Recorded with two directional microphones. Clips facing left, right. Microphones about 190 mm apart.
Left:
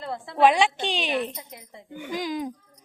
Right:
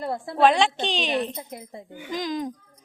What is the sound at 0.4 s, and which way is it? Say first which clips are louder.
Speech: even; 10° left (ahead or behind).